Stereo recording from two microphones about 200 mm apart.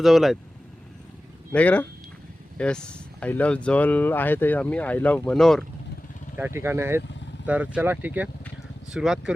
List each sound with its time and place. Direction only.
0.0 s speech: centre (ahead or behind)
1.5 s speech: 5° left (ahead or behind)
6.3 s speech: 10° right (ahead or behind)